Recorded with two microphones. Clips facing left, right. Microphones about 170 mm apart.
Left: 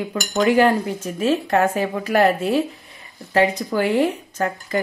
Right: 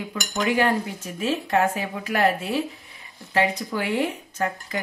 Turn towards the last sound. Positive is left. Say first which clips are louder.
# left 4 dB
turn(degrees=45)  # may be behind; listen again after turning